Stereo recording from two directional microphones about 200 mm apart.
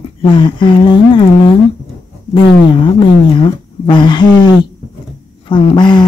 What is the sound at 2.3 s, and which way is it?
Speech, 25° left (ahead or behind).